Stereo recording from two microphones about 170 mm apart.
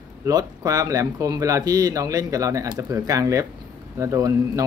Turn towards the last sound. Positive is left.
turn(degrees=-20)  # may be behind; listen again after turning